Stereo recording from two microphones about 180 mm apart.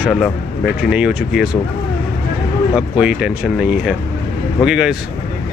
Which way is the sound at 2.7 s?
5° right (ahead or behind).